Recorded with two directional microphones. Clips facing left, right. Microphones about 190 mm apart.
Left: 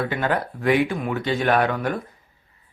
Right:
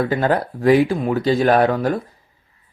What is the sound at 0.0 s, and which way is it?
Speech, 35° right (ahead or behind).